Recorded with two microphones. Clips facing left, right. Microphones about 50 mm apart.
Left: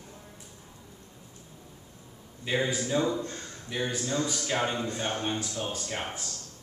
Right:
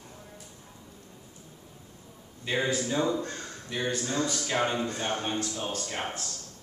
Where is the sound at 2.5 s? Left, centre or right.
Centre.